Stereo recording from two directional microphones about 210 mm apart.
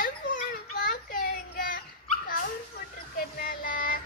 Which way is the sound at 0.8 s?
40° left (ahead or behind).